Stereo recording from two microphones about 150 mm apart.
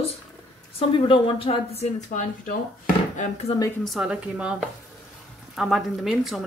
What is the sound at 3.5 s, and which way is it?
Speech, 35° left (ahead or behind).